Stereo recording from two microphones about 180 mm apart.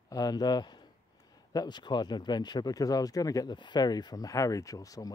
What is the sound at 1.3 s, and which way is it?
Speech, 20° left (ahead or behind).